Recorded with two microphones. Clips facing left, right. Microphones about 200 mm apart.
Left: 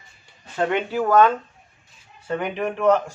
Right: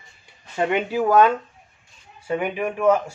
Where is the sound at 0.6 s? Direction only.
10° right (ahead or behind).